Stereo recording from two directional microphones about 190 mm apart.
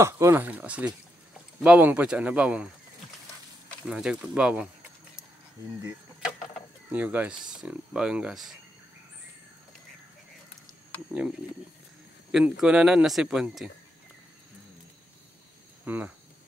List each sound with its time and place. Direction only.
0.0 s speech: 15° right (ahead or behind)
6.9 s speech: 10° right (ahead or behind)
12.3 s speech: 5° right (ahead or behind)
15.8 s cricket: 10° right (ahead or behind)